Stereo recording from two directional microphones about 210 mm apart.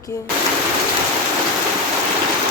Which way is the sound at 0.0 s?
15° left (ahead or behind).